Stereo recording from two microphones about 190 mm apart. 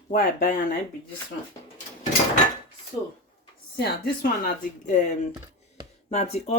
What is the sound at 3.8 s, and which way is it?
A woman's voice, 55° left (ahead or behind).